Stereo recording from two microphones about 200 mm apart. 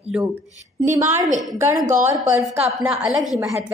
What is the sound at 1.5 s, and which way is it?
Speech, 15° right (ahead or behind).